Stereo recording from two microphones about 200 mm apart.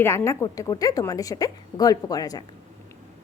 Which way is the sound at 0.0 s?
10° left (ahead or behind).